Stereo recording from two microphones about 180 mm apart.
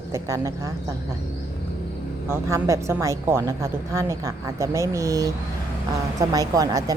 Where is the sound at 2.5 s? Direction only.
15° right (ahead or behind).